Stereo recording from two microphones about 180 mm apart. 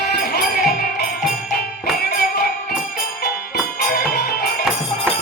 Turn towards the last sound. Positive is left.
turn(degrees=60)  # may be behind; listen again after turning